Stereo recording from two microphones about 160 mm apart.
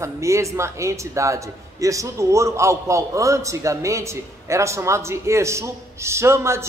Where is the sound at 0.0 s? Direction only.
20° right (ahead or behind).